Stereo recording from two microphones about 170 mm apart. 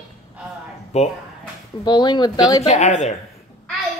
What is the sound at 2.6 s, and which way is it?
Speech, 40° left (ahead or behind).